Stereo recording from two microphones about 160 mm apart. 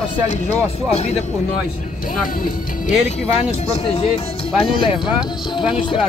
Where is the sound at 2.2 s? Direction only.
60° left (ahead or behind).